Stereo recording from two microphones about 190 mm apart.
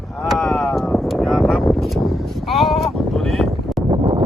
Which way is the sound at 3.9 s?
25° right (ahead or behind).